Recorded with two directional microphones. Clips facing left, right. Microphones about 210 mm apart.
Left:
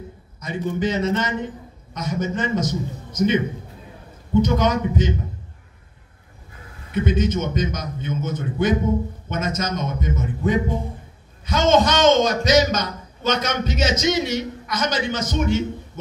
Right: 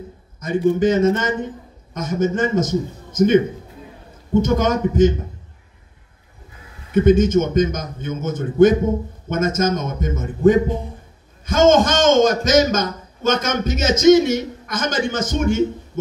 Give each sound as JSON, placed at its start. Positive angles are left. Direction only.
{"t": 0.4, "sound": "a man's voice", "side_deg": -50}
{"t": 6.9, "sound": "a man's voice", "side_deg": -50}